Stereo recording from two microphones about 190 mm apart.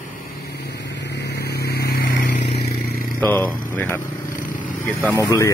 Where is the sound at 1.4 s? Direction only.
55° left (ahead or behind).